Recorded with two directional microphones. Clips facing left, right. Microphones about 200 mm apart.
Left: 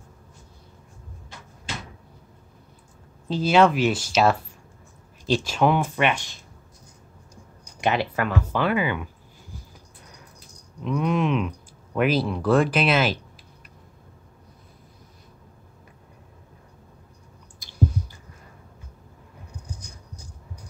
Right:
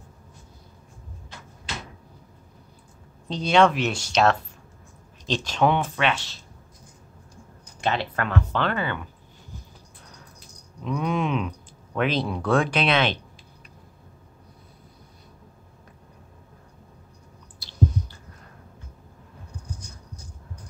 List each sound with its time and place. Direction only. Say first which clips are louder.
3.3 s speech: left 1 dB; 5° left (ahead or behind)
7.8 s speech: left 3 dB; 10° left (ahead or behind)
10.8 s speech: left 2 dB; centre (ahead or behind)